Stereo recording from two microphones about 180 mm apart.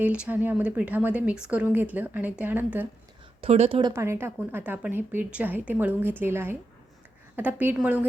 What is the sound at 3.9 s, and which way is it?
A woman's voice, 15° right (ahead or behind).